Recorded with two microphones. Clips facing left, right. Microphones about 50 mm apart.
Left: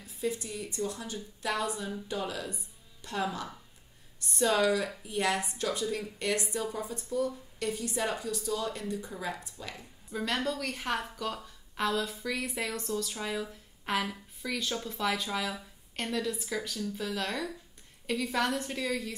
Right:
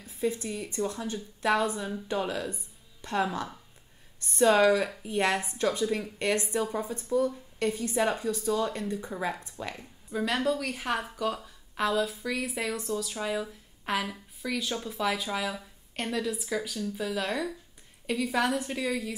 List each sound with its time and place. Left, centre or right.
0.0 s a woman's voice: right
10.1 s a woman's voice: centre